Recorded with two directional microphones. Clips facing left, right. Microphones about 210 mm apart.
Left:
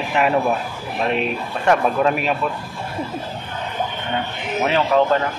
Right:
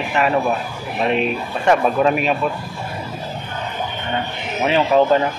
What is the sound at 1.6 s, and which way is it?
Speech, 5° right (ahead or behind).